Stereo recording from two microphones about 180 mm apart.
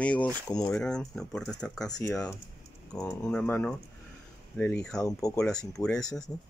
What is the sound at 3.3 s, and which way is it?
Speech, 5° left (ahead or behind).